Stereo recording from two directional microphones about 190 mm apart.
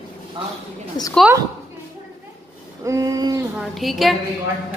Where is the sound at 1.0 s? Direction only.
20° left (ahead or behind).